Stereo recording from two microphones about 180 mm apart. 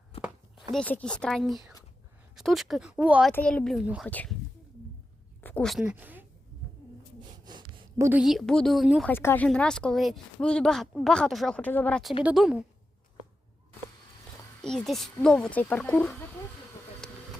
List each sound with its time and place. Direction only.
0.1 s a sound: 35° left (ahead or behind)
0.7 s speech: 5° left (ahead or behind)
3.3 s speech: 5° left (ahead or behind)
4.1 s speech: 10° left (ahead or behind)
5.4 s a woman's voice: 10° left (ahead or behind); by 6.2 s 10° right (ahead or behind)
7.2 s a sound: 25° right (ahead or behind)
8.2 s speech: centre (ahead or behind)
9.0 s speech: 10° left (ahead or behind)
14.6 s speech: 5° left (ahead or behind)
17.0 s vehicle: 5° left (ahead or behind)